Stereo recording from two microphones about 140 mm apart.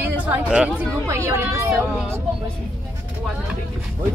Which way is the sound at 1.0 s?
20° right (ahead or behind).